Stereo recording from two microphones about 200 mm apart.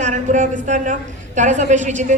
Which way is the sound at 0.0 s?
40° right (ahead or behind).